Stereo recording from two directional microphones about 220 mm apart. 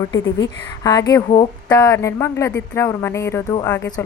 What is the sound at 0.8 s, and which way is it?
Speech, 15° left (ahead or behind).